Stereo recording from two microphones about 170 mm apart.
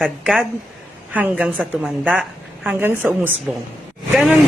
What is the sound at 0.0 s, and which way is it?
A woman's voice, centre (ahead or behind).